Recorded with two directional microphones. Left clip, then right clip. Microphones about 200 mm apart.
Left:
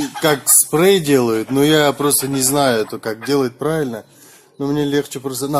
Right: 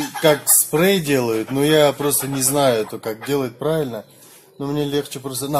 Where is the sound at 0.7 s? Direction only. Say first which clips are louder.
Left 4 dB; 45° left (ahead or behind).